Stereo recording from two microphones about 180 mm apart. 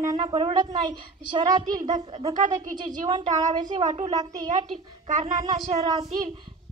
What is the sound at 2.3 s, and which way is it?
Speech, 45° right (ahead or behind).